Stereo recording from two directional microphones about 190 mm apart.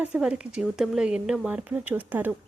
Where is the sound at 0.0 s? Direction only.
5° right (ahead or behind).